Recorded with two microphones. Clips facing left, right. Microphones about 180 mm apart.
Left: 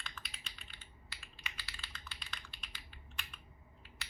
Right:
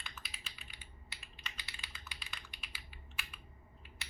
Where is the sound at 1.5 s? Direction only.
15° right (ahead or behind).